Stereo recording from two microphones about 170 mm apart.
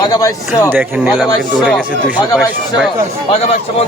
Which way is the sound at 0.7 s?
5° right (ahead or behind).